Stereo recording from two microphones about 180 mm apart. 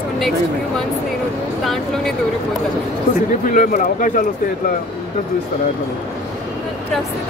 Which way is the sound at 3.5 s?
45° left (ahead or behind).